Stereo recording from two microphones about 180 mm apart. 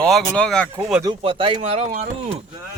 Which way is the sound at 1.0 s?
30° right (ahead or behind).